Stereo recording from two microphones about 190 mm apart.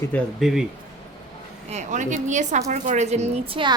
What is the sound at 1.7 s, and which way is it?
A woman's voice, 40° right (ahead or behind).